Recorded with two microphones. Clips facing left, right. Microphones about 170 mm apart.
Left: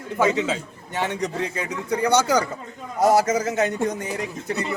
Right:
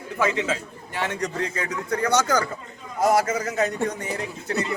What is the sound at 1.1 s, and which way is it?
A man's voice, 10° left (ahead or behind).